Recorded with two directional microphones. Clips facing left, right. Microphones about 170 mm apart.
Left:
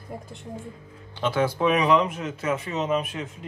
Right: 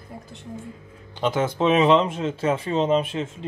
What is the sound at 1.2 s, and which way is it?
Speech, 20° right (ahead or behind).